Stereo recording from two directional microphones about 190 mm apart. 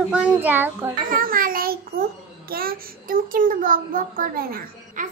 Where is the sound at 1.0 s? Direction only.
45° right (ahead or behind).